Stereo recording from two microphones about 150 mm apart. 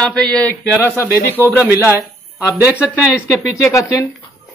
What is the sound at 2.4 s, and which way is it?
Speech, 5° right (ahead or behind).